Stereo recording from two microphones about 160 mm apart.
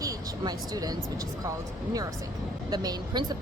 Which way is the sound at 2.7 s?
25° right (ahead or behind).